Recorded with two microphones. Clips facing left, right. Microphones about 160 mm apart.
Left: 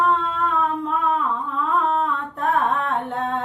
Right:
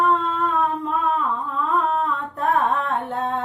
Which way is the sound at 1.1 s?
Centre (ahead or behind).